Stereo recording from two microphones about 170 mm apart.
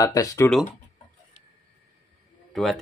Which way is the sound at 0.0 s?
20° left (ahead or behind).